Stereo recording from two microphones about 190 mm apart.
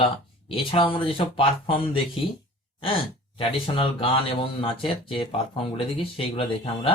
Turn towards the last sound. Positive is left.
turn(degrees=30)  # may be behind; listen again after turning